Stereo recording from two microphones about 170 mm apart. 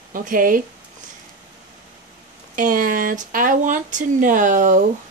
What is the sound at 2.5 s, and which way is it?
Speech, 55° right (ahead or behind).